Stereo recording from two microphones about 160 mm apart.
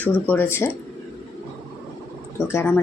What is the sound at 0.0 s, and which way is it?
Speech, 10° left (ahead or behind).